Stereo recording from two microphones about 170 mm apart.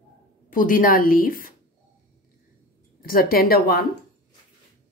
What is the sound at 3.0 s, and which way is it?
Speech, 60° left (ahead or behind).